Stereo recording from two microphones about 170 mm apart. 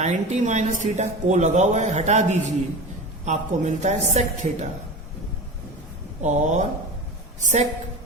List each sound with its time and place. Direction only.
0.0 s speech: 45° right (ahead or behind)
6.2 s speech: 45° right (ahead or behind)